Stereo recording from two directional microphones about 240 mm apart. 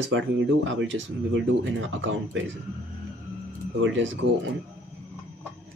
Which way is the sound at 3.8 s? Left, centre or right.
Right.